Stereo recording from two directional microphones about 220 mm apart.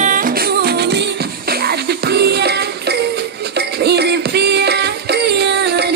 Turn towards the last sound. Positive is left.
turn(degrees=-50)  # may be behind; listen again after turning